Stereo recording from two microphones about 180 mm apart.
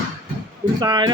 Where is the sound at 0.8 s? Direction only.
25° right (ahead or behind).